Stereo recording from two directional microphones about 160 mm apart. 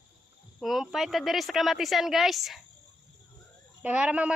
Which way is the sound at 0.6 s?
Centre (ahead or behind).